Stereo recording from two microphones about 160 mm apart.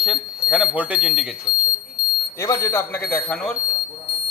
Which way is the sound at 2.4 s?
20° left (ahead or behind).